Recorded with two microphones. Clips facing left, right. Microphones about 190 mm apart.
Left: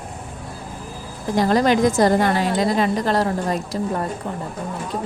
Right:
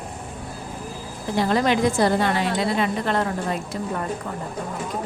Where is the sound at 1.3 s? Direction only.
40° left (ahead or behind).